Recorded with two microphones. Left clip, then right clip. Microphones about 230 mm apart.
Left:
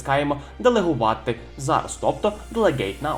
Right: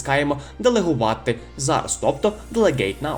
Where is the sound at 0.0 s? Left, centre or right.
Right.